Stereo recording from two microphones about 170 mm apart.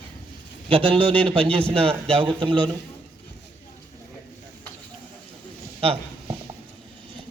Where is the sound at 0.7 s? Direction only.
30° right (ahead or behind).